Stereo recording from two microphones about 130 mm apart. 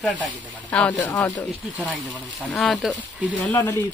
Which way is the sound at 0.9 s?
30° left (ahead or behind).